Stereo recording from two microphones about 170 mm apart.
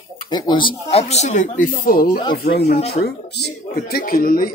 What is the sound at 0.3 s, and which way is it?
Speech, 25° left (ahead or behind).